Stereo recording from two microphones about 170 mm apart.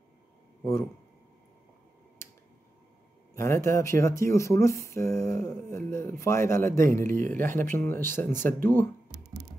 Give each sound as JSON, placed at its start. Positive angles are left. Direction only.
{"t": 3.3, "sound": "speech", "side_deg": 15}